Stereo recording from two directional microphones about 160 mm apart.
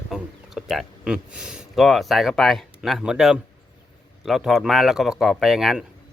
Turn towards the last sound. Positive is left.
turn(degrees=-5)  # may be behind; listen again after turning